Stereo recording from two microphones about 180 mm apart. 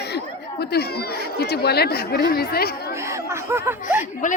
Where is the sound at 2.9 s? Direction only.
15° right (ahead or behind).